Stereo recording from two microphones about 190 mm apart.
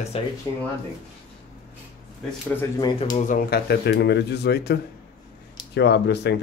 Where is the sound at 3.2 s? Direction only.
45° left (ahead or behind).